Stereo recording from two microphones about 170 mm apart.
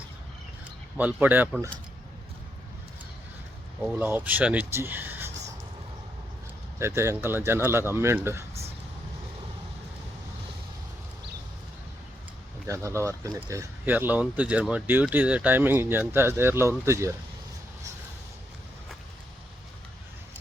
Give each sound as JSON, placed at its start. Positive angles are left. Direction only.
{"t": 0.9, "sound": "speech", "side_deg": -10}
{"t": 3.8, "sound": "speech", "side_deg": -10}
{"t": 6.7, "sound": "speech", "side_deg": -15}
{"t": 12.6, "sound": "speech", "side_deg": -20}